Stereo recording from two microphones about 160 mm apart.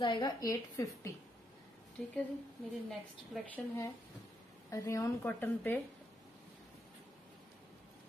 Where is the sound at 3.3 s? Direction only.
10° left (ahead or behind).